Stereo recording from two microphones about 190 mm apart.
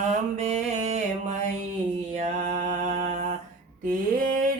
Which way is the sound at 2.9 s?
40° right (ahead or behind).